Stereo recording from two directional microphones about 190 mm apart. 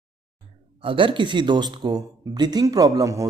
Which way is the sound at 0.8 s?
25° right (ahead or behind).